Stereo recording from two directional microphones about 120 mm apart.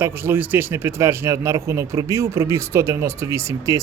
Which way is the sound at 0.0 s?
20° right (ahead or behind).